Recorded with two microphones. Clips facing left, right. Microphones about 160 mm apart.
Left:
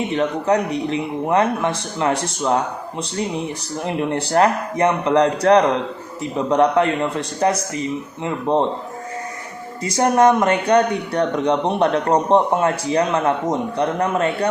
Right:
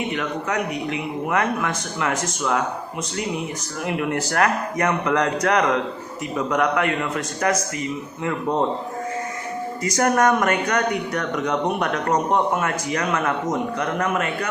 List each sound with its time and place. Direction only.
0.1 s a man's voice: 30° left (ahead or behind)
3.8 s speech: 30° left (ahead or behind)
9.8 s speech: 25° left (ahead or behind)